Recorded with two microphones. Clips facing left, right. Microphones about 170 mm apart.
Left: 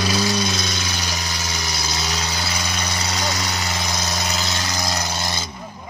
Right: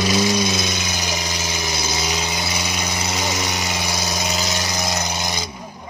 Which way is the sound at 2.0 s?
20° right (ahead or behind).